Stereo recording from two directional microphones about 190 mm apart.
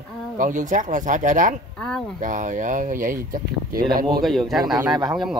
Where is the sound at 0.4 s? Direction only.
45° right (ahead or behind).